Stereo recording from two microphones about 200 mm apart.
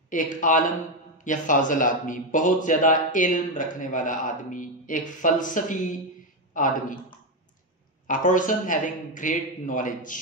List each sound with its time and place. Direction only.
0.1 s a man's voice: 40° left (ahead or behind)
8.1 s a man's voice: 40° left (ahead or behind)